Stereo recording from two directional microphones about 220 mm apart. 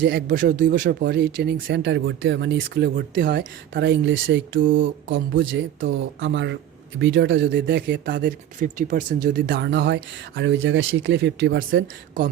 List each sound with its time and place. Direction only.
0.0 s speech: 50° right (ahead or behind)